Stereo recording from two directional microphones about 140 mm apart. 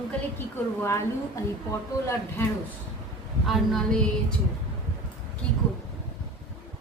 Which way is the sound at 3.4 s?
Centre (ahead or behind).